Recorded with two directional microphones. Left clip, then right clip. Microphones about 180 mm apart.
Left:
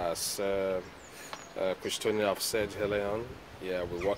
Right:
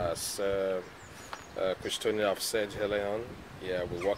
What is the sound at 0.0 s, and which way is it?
Speech, 45° left (ahead or behind).